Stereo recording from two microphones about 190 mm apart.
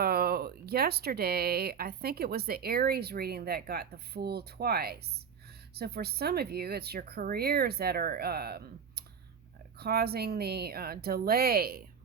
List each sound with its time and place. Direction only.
0.0 s speech: 55° right (ahead or behind)